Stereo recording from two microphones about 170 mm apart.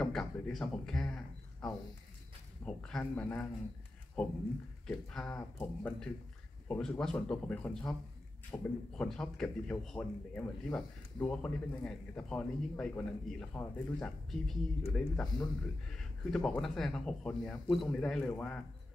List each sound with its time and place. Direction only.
0.0 s a sound: centre (ahead or behind)
2.6 s speech: 5° left (ahead or behind)
4.8 s a man's voice: 5° left (ahead or behind)